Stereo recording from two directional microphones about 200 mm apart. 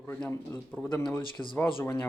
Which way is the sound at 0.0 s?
5° left (ahead or behind).